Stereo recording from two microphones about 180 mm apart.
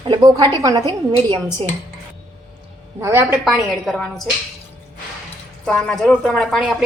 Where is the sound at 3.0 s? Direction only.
15° right (ahead or behind).